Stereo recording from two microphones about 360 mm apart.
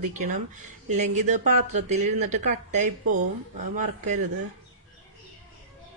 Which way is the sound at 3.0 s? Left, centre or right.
Right.